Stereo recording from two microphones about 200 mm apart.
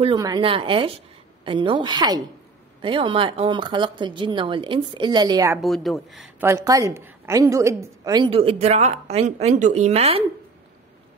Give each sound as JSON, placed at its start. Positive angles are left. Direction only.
{"t": 0.0, "sound": "a woman's voice", "side_deg": -20}
{"t": 5.6, "sound": "a woman's voice", "side_deg": 0}
{"t": 6.4, "sound": "a woman's voice", "side_deg": -15}